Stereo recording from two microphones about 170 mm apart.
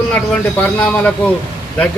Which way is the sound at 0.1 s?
5° left (ahead or behind).